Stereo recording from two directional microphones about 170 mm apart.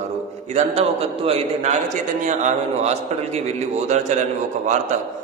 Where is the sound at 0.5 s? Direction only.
35° right (ahead or behind).